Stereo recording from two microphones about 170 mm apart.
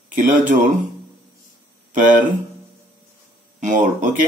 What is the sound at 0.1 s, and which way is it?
Speech, 50° right (ahead or behind).